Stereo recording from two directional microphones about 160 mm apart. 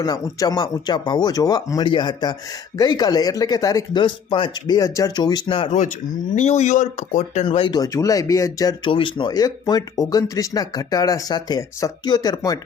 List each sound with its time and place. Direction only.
0.0 s speech: 25° left (ahead or behind)
6.3 s speech: 45° left (ahead or behind)
7.4 s speech: 30° left (ahead or behind)